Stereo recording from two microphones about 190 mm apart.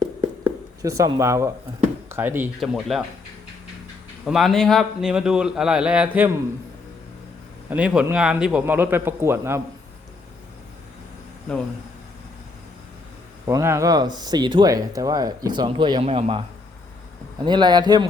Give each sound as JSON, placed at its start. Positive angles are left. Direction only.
{"t": 0.4, "sound": "speech", "side_deg": -15}
{"t": 4.3, "sound": "a man's voice", "side_deg": 0}
{"t": 7.7, "sound": "speech", "side_deg": -5}
{"t": 13.5, "sound": "speech", "side_deg": -15}
{"t": 17.4, "sound": "speech", "side_deg": -25}